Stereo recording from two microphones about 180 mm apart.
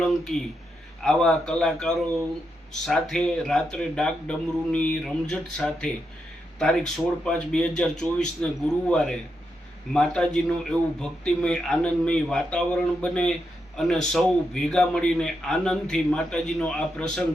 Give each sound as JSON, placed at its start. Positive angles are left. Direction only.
{"t": 0.0, "sound": "a man's voice", "side_deg": 5}